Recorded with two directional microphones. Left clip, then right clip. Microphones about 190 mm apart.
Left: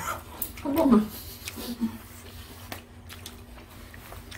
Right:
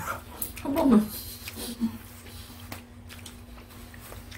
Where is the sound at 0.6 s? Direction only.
35° right (ahead or behind).